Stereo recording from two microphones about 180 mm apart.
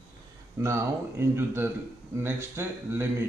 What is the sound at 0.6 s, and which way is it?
Speech, 15° right (ahead or behind).